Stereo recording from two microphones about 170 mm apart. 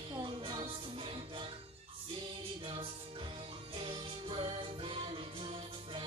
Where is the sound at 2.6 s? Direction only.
30° right (ahead or behind).